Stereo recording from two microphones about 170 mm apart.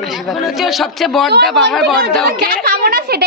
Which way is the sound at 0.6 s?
Centre (ahead or behind).